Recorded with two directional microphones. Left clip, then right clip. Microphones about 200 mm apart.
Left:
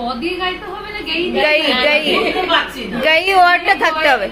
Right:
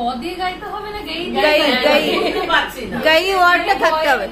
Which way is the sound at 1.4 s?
Centre (ahead or behind).